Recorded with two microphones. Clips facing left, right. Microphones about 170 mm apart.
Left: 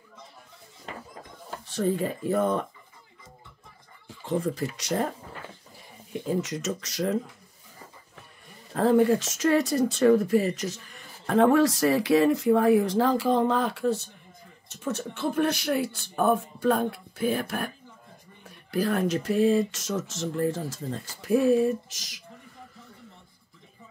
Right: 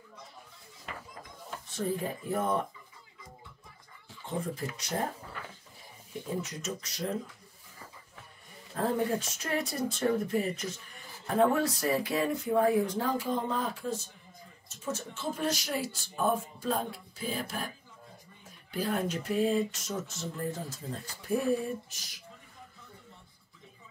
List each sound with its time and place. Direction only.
0.9 s a sound: 30° left (ahead or behind)
1.7 s speech: 75° left (ahead or behind)
4.3 s speech: 80° left
6.2 s speech: 90° left
8.7 s speech: 80° left; by 17.6 s 60° left (ahead or behind)
18.4 s speech: 75° left (ahead or behind); by 22.2 s 90° left